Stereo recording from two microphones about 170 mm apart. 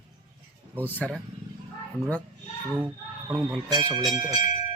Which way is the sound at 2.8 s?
10° right (ahead or behind).